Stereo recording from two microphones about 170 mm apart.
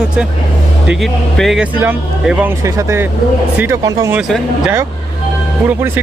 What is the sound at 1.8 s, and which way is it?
Speech, 10° right (ahead or behind).